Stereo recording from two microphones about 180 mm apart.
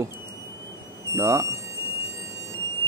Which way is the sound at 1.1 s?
15° right (ahead or behind).